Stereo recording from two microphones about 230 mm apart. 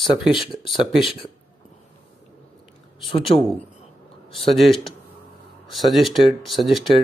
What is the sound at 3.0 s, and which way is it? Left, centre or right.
Speech, left.